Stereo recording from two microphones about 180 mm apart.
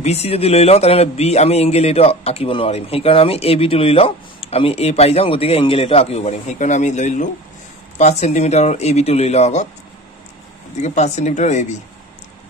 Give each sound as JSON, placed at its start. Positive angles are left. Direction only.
{"t": 0.0, "sound": "a man's voice", "side_deg": 35}
{"t": 10.8, "sound": "a man's voice", "side_deg": 40}